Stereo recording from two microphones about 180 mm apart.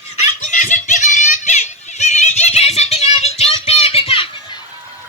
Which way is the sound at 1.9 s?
40° left (ahead or behind).